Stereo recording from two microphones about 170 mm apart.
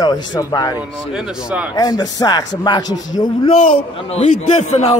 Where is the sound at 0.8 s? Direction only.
5° right (ahead or behind).